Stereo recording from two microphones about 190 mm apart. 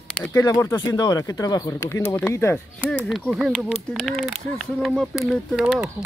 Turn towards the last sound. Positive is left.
turn(degrees=-5)  # may be behind; listen again after turning